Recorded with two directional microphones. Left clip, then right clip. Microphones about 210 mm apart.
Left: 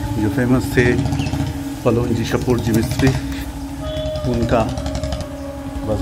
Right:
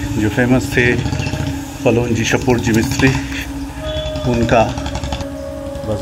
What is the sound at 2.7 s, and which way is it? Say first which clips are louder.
Speech: right 4 dB; 55° left (ahead or behind).